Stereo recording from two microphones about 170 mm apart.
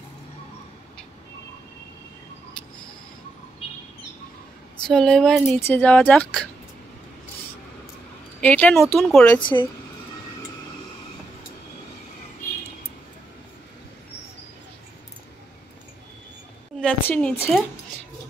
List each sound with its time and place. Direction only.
4.8 s a woman's voice: 5° left (ahead or behind)
8.4 s speech: 10° left (ahead or behind)
9.4 s a woman's voice: 30° left (ahead or behind)
16.8 s a woman's voice: 5° left (ahead or behind)